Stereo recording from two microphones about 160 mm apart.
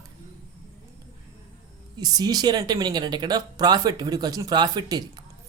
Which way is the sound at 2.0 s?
25° right (ahead or behind).